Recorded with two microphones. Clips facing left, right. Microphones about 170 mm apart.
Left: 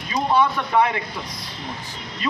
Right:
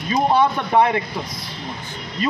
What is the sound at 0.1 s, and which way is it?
Speech, 35° right (ahead or behind).